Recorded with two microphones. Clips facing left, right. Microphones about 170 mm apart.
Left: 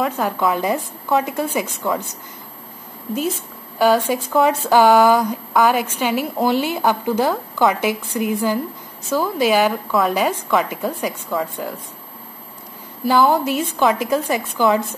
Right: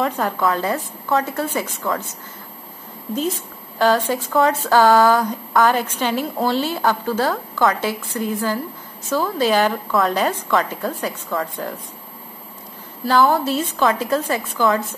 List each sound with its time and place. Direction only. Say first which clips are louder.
0.4 s a woman's voice: left 2 dB; 15° left (ahead or behind)
3.7 s a woman's voice: left 2 dB; 10° left (ahead or behind)
13.0 s a woman's voice: left 1 dB; 15° left (ahead or behind)